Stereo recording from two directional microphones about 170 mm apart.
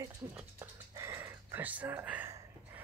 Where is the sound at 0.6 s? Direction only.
15° right (ahead or behind).